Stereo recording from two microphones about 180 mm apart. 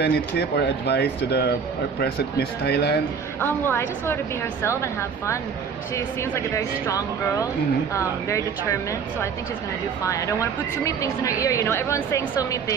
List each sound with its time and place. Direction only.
0.0 s speech: 70° left (ahead or behind)
3.3 s speech: 10° left (ahead or behind)
6.5 s speech: 20° left (ahead or behind)
10.0 s speech: 15° left (ahead or behind)